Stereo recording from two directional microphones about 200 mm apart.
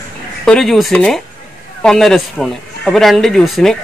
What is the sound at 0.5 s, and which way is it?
Speech, centre (ahead or behind).